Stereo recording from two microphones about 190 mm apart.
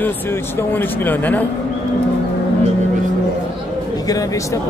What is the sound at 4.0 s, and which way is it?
Speech, 20° left (ahead or behind).